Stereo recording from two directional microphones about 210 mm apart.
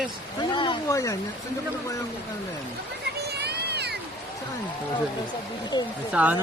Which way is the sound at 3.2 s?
50° right (ahead or behind).